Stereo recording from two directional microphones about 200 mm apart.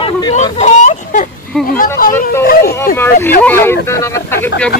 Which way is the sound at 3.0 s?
10° left (ahead or behind).